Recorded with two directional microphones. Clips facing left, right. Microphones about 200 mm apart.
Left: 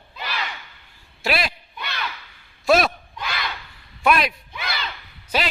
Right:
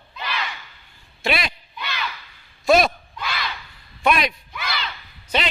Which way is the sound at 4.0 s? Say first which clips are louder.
Left 1 dB; 5° left (ahead or behind).